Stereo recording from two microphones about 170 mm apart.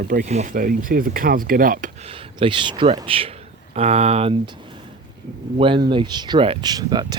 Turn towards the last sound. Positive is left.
turn(degrees=-25)  # may be behind; listen again after turning